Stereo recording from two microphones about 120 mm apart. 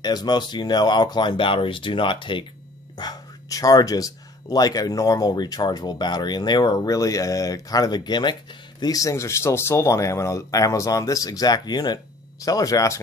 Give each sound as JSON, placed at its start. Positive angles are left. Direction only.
{"t": 0.0, "sound": "speech", "side_deg": 35}
{"t": 3.0, "sound": "speech", "side_deg": 30}